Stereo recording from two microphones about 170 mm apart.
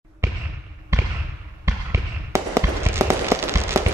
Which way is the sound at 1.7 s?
15° right (ahead or behind).